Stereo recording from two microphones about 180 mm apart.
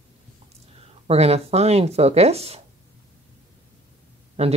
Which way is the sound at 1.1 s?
35° right (ahead or behind).